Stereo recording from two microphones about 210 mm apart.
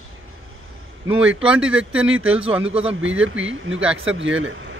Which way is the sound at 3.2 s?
65° right (ahead or behind).